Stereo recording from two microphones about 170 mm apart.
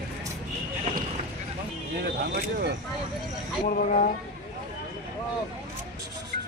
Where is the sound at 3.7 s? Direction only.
50° left (ahead or behind).